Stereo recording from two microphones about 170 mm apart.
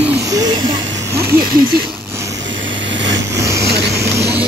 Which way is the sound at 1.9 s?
15° right (ahead or behind).